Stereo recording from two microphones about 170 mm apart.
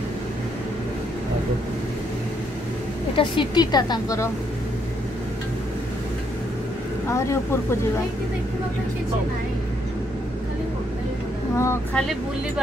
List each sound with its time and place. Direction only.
3.2 s a woman's voice: 25° left (ahead or behind)
7.1 s speech: 15° left (ahead or behind)
11.5 s speech: 15° left (ahead or behind)